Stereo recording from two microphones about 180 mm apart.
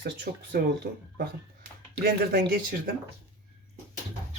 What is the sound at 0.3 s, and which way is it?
Speech, 55° right (ahead or behind).